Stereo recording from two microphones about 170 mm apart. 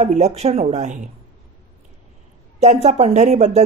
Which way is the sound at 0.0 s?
40° right (ahead or behind).